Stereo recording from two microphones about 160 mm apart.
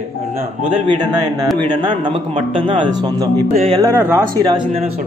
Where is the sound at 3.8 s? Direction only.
15° right (ahead or behind).